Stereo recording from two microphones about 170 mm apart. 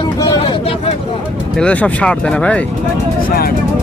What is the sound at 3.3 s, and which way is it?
Speech, 60° left (ahead or behind).